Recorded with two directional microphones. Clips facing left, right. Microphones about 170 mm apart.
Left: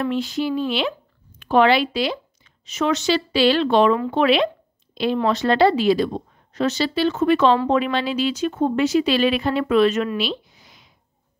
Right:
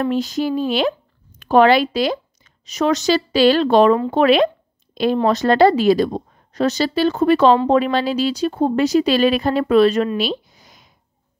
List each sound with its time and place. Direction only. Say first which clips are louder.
0.0 s speech: right 3 dB; 40° right (ahead or behind)